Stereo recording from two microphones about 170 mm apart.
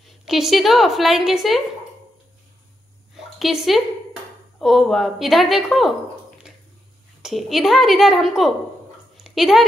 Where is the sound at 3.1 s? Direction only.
Centre (ahead or behind).